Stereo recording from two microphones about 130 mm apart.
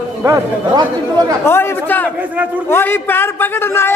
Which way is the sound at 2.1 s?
10° right (ahead or behind).